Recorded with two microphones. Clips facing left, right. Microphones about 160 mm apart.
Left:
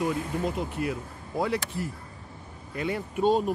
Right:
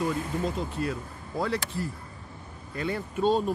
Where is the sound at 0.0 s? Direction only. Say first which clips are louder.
Left 1 dB; 15° left (ahead or behind).